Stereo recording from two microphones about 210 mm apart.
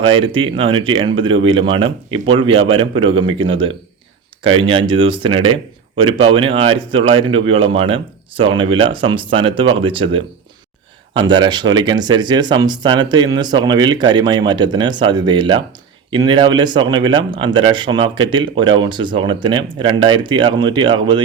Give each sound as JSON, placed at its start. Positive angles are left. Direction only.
{"t": 0.0, "sound": "speech", "side_deg": -25}